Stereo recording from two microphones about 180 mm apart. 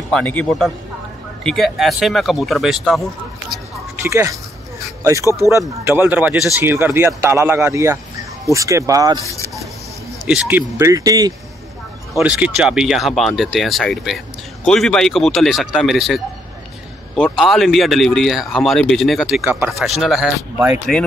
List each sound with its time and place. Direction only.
0.1 s speech: 10° left (ahead or behind)
4.0 s speech: 15° right (ahead or behind)
5.9 s speech: 10° right (ahead or behind)
9.2 s speech: 15° left (ahead or behind)
10.2 s speech: 5° right (ahead or behind)
10.8 s speech: 20° right (ahead or behind)
12.2 s speech: 5° right (ahead or behind)
17.2 s speech: centre (ahead or behind)